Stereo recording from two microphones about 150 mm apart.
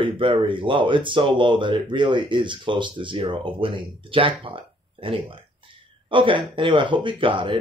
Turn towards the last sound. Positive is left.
turn(degrees=-35)  # may be behind; listen again after turning